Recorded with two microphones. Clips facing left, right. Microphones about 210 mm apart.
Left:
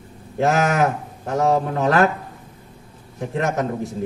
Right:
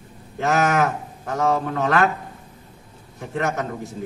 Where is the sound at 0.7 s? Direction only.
35° left (ahead or behind).